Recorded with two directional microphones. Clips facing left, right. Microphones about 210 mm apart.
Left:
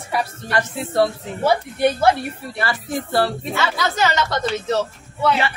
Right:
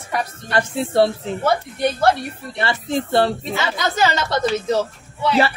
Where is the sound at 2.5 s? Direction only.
25° right (ahead or behind).